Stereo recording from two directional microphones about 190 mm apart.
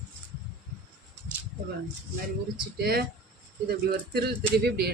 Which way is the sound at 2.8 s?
55° right (ahead or behind).